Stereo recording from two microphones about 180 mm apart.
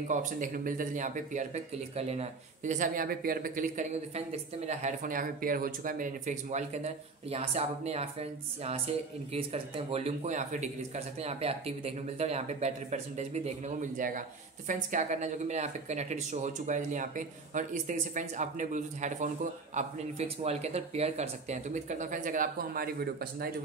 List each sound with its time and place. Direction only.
0.1 s speech: 45° right (ahead or behind)